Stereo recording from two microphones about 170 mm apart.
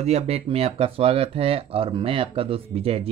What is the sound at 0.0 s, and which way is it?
Speech, 40° right (ahead or behind).